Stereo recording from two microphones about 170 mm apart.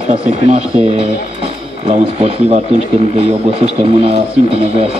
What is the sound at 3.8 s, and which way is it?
A man's voice, 35° right (ahead or behind).